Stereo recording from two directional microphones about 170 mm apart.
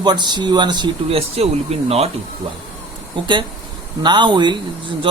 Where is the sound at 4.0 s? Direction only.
25° right (ahead or behind).